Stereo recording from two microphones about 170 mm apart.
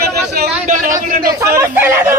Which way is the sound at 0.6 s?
50° right (ahead or behind).